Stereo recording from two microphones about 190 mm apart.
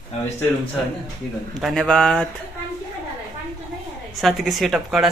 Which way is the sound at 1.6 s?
Centre (ahead or behind).